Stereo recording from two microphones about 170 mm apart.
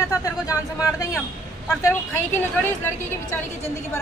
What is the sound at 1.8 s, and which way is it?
Speech, 15° left (ahead or behind).